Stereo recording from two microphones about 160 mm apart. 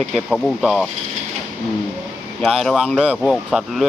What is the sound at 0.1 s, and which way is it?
Speech, centre (ahead or behind).